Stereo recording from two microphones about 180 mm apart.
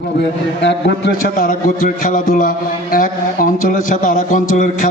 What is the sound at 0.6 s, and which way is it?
A man's voice, 75° left (ahead or behind).